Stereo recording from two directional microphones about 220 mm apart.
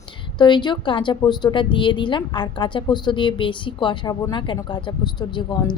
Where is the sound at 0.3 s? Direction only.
20° left (ahead or behind).